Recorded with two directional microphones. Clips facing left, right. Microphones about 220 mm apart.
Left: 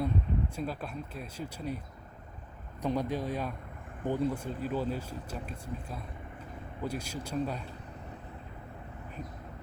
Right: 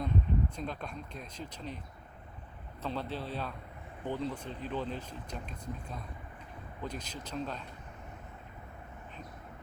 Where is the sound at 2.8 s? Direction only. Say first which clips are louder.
Left 6 dB; 15° left (ahead or behind).